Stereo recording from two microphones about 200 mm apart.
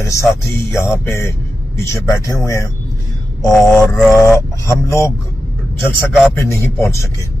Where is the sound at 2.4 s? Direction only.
15° left (ahead or behind).